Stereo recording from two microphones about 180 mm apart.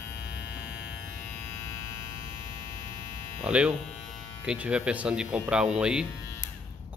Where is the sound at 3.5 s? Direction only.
5° right (ahead or behind).